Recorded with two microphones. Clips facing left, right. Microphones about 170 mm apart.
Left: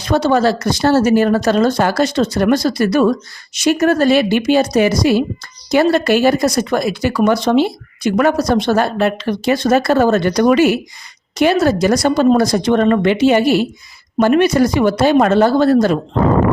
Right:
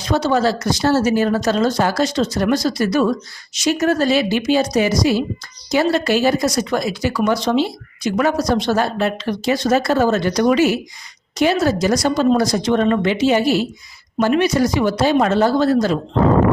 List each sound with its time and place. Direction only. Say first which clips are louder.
0.0 s speech: left 3 dB; 60° left (ahead or behind)